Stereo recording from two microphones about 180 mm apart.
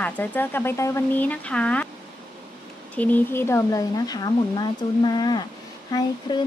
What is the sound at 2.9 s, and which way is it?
Speech, 10° left (ahead or behind).